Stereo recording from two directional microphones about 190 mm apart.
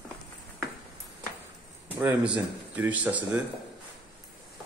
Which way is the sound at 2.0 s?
5° right (ahead or behind).